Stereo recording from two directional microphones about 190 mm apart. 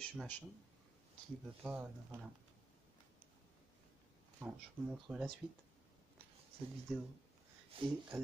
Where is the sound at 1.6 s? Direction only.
5° right (ahead or behind).